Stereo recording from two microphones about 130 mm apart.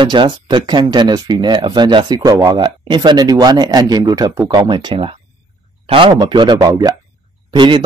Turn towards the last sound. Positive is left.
turn(degrees=-35)  # may be behind; listen again after turning